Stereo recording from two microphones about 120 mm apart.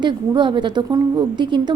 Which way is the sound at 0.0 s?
40° right (ahead or behind).